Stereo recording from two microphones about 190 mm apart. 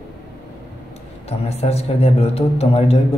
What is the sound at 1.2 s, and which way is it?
Speech, 35° left (ahead or behind).